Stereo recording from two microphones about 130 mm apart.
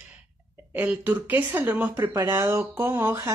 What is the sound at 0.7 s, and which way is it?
Speech, 10° right (ahead or behind).